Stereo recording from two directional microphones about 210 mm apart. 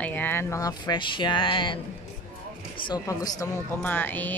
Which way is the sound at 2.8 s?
20° left (ahead or behind).